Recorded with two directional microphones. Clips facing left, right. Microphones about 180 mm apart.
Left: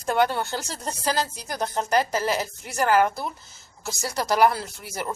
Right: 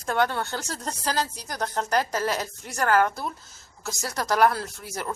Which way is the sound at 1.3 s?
25° left (ahead or behind).